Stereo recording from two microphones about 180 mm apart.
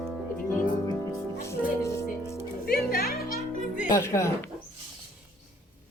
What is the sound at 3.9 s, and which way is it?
Speech, 15° left (ahead or behind).